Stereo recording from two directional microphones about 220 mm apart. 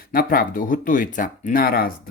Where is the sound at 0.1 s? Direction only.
40° left (ahead or behind).